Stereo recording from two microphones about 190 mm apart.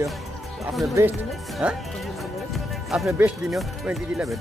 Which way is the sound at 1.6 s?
5° right (ahead or behind).